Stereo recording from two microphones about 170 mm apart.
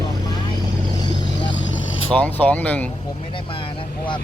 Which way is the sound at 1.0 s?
25° left (ahead or behind).